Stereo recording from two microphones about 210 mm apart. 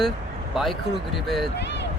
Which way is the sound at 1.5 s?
55° left (ahead or behind).